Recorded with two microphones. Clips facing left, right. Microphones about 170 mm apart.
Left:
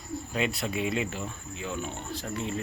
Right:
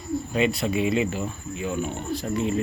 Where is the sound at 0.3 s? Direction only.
Centre (ahead or behind).